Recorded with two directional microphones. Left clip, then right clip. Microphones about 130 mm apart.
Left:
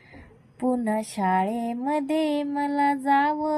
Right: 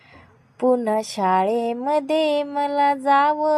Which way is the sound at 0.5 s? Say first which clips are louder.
Right 7 dB; 20° right (ahead or behind).